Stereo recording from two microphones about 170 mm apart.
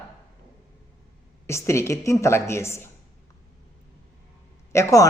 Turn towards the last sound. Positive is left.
turn(degrees=15)  # may be behind; listen again after turning